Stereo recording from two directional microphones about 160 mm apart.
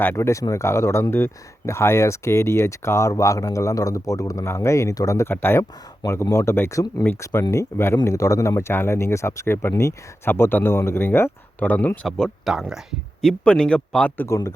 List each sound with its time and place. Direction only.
0.0 s speech: 15° left (ahead or behind)
14.3 s speech: 20° left (ahead or behind)